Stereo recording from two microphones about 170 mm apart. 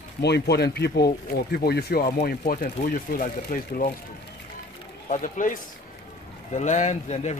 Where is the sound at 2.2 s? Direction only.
50° left (ahead or behind).